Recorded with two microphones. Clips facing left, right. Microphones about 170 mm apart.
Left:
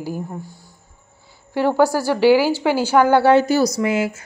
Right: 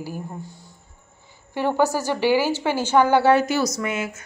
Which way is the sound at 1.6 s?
10° left (ahead or behind).